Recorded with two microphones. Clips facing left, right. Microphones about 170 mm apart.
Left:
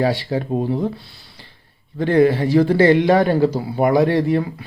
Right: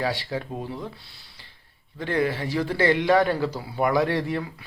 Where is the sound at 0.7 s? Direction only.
45° left (ahead or behind).